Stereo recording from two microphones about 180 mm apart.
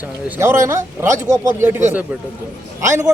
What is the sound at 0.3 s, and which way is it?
A man's voice, 15° right (ahead or behind).